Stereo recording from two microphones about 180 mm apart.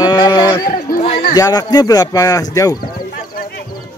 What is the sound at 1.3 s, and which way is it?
Speech, 20° left (ahead or behind).